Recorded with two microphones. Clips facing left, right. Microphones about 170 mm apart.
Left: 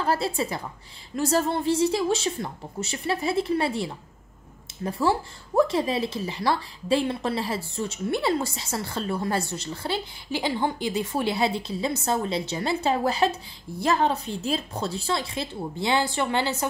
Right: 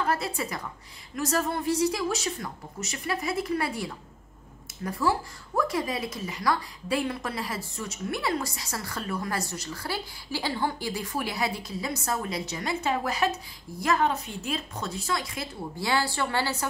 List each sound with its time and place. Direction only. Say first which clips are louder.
0.0 s speech: left 3 dB; 30° left (ahead or behind)